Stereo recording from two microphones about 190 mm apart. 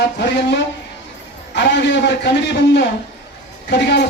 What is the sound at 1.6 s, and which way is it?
Speech, 65° left (ahead or behind).